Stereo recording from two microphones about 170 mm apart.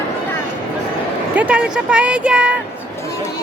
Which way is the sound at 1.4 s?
5° right (ahead or behind).